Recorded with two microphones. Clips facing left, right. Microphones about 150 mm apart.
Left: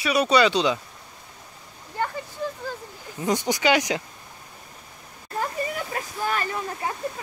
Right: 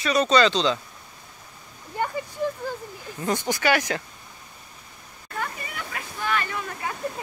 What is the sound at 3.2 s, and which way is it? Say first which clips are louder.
Speech: left 2 dB; 15° left (ahead or behind).